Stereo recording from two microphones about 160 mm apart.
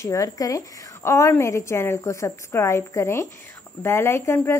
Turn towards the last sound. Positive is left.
turn(degrees=15)  # may be behind; listen again after turning